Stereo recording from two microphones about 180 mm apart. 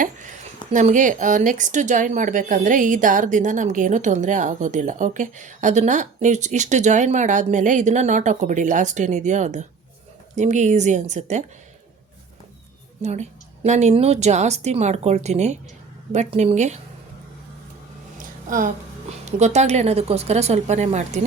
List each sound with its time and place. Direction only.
0.7 s a woman's voice: 45° right (ahead or behind)
13.0 s a woman's voice: 40° right (ahead or behind)
18.2 s a woman's voice: 50° right (ahead or behind)